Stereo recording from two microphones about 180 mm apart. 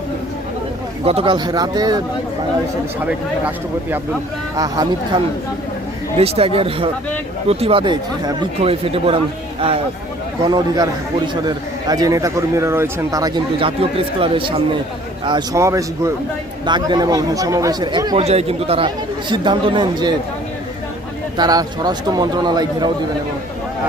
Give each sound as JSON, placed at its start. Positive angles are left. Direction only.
{"t": 1.0, "sound": "a man's voice", "side_deg": -30}
{"t": 4.5, "sound": "a man's voice", "side_deg": -20}
{"t": 6.1, "sound": "a man's voice", "side_deg": -35}
{"t": 15.3, "sound": "a man's voice", "side_deg": -20}
{"t": 21.3, "sound": "a man's voice", "side_deg": -20}